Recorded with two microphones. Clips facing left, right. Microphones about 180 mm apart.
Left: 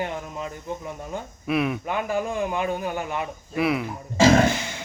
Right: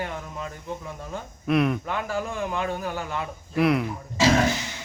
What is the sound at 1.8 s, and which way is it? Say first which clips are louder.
A man's voice: left 3 dB; 15° left (ahead or behind).